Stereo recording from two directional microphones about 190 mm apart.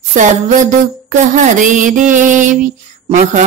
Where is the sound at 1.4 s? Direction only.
40° right (ahead or behind).